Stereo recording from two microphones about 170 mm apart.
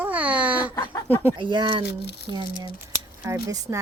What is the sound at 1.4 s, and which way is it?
Speech, 25° right (ahead or behind).